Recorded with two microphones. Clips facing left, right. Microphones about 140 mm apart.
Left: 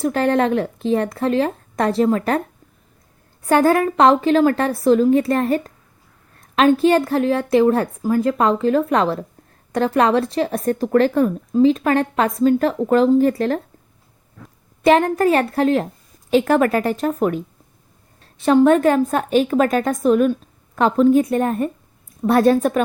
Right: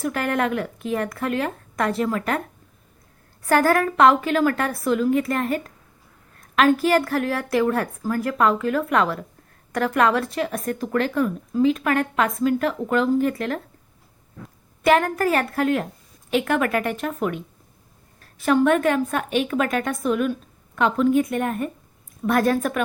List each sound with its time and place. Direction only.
0.0 s speech: 30° left (ahead or behind)
3.4 s speech: 20° left (ahead or behind)
14.8 s speech: 25° left (ahead or behind)
18.2 s speech: 25° left (ahead or behind)